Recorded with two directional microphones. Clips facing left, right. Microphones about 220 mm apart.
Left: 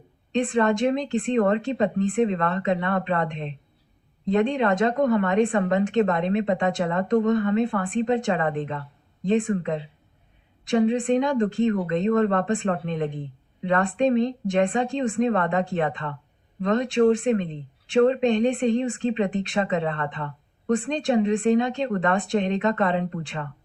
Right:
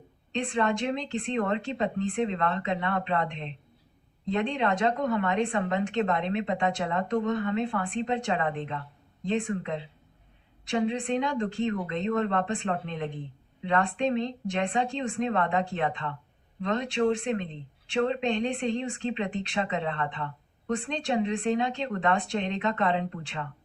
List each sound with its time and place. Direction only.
0.3 s speech: 50° left (ahead or behind)